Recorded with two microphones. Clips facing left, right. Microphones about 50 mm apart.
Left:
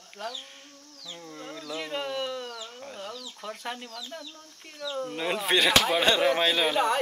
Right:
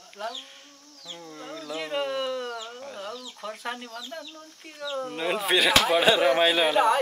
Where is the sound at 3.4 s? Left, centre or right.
Centre.